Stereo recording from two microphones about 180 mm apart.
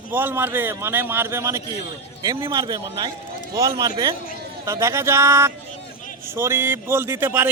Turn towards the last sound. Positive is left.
turn(degrees=-10)  # may be behind; listen again after turning